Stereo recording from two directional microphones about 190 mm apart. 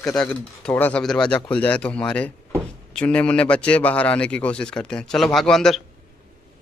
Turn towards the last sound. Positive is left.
turn(degrees=0)  # may be behind; listen again after turning